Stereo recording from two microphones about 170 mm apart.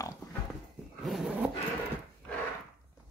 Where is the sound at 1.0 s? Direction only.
Centre (ahead or behind).